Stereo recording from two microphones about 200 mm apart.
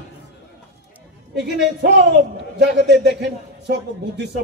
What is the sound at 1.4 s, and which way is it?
A man's voice, 55° right (ahead or behind).